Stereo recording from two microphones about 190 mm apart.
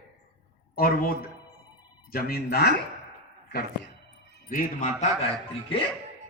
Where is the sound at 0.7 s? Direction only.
50° left (ahead or behind).